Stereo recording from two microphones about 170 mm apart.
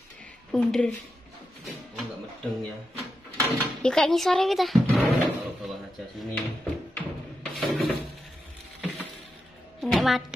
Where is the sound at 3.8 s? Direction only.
5° left (ahead or behind).